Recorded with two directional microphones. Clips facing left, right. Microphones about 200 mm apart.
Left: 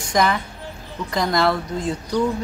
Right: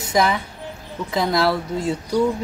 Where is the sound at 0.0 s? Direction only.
5° right (ahead or behind).